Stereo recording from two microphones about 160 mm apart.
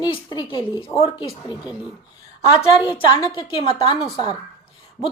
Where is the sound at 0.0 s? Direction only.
25° left (ahead or behind).